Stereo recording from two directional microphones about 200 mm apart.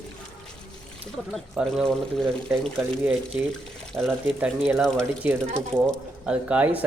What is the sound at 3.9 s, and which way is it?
Speech, centre (ahead or behind).